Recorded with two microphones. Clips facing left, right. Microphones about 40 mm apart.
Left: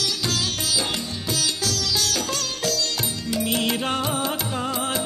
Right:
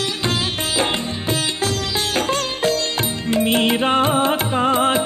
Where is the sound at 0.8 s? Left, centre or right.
Right.